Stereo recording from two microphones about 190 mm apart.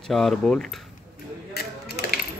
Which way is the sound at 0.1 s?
Centre (ahead or behind).